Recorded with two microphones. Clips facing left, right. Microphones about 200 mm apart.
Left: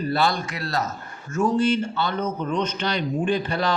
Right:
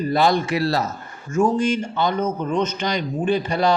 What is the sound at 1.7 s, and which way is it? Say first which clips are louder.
A man's voice: right 2 dB; 15° right (ahead or behind).